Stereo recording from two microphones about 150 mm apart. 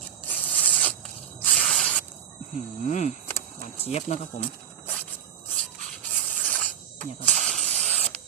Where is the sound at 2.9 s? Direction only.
50° left (ahead or behind).